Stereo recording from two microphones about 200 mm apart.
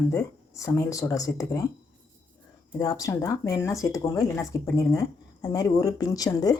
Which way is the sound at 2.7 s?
20° left (ahead or behind).